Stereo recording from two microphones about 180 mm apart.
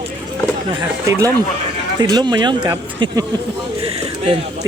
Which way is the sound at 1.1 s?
20° right (ahead or behind).